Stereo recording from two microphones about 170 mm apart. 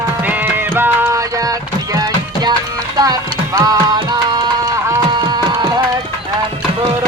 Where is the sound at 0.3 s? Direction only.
10° right (ahead or behind).